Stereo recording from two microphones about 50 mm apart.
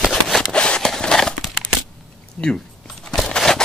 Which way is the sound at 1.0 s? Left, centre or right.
Centre.